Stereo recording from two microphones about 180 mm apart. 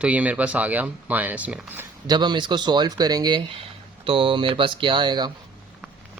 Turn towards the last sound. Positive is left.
turn(degrees=-25)  # may be behind; listen again after turning